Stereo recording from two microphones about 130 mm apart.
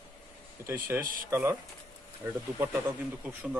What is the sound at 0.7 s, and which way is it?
Speech, 20° right (ahead or behind).